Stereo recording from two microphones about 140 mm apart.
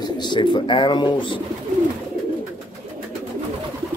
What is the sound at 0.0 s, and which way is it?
Speech, 30° left (ahead or behind).